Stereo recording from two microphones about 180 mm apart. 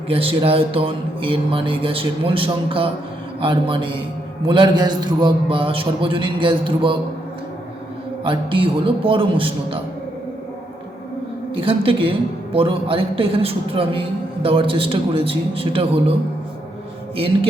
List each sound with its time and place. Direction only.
0.1 s speech: 30° right (ahead or behind)
8.2 s speech: 30° right (ahead or behind)
11.5 s a man's voice: 30° right (ahead or behind)